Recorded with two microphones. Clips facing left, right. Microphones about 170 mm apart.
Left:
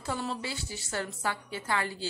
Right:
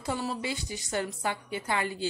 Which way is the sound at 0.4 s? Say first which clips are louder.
Right 3 dB; 15° right (ahead or behind).